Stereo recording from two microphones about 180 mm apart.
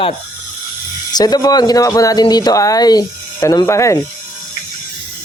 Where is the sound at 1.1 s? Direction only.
20° left (ahead or behind).